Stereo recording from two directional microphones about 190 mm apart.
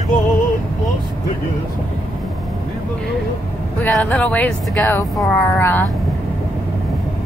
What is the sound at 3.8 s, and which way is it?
Speech, 10° left (ahead or behind).